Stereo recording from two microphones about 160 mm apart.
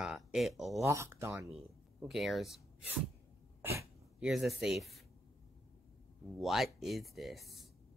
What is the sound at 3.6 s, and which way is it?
Cough, 15° right (ahead or behind).